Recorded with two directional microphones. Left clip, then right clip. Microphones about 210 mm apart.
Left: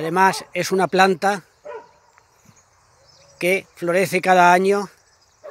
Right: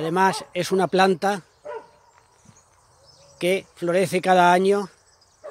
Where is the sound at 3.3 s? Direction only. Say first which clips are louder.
Left 3 dB; 5° left (ahead or behind).